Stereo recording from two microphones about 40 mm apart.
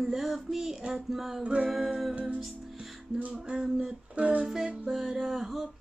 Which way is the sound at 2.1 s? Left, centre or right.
Right.